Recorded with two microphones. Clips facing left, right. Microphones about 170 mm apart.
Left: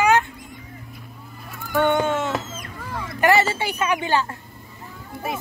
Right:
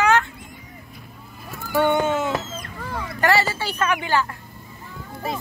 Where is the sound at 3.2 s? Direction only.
20° left (ahead or behind).